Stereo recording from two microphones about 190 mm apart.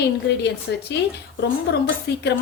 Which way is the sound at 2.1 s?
60° left (ahead or behind).